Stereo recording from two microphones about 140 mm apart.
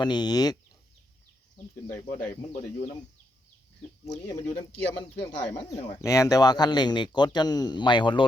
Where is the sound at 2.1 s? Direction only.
60° left (ahead or behind).